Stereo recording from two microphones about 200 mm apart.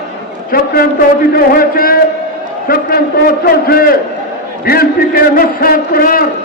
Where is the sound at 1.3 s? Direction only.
45° left (ahead or behind).